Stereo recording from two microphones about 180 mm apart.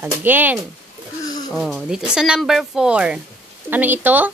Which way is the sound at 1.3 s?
20° left (ahead or behind).